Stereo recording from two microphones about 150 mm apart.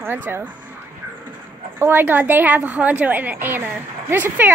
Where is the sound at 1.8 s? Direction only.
15° right (ahead or behind).